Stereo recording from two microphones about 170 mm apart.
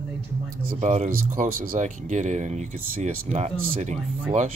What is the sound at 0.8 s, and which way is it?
Speech, 40° right (ahead or behind).